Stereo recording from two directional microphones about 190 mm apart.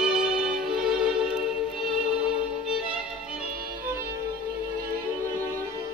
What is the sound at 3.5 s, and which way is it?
Music, 50° right (ahead or behind).